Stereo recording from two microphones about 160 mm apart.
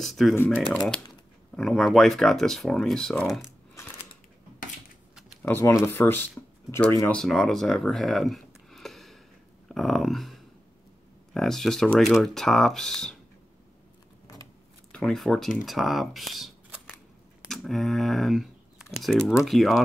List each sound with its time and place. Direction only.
0.0 s speech: centre (ahead or behind)
0.3 s speech: 15° left (ahead or behind)
0.6 s speech: 5° left (ahead or behind)
5.4 s speech: 15° left (ahead or behind)
7.1 s speech: 5° left (ahead or behind)
9.7 s a sound: centre (ahead or behind)
11.3 s speech: centre (ahead or behind)
14.9 s speech: 5° left (ahead or behind)
17.5 s a sound: centre (ahead or behind)
18.9 s speech: centre (ahead or behind)